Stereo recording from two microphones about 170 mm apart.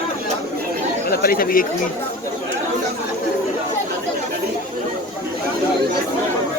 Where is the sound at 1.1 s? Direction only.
60° left (ahead or behind).